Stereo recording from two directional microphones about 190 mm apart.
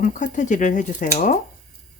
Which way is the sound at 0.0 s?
40° left (ahead or behind).